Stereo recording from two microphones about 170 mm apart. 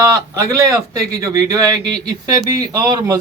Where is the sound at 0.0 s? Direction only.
20° right (ahead or behind).